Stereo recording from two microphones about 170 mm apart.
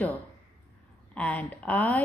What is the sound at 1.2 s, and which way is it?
Speech, 10° left (ahead or behind).